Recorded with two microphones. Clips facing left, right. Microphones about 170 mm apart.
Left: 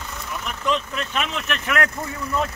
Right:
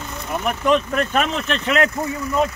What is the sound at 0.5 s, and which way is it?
Speech, 55° right (ahead or behind).